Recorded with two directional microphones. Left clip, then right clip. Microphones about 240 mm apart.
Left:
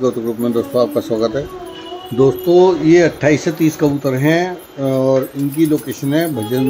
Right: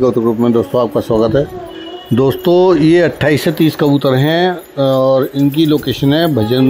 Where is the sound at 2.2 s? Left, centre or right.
Right.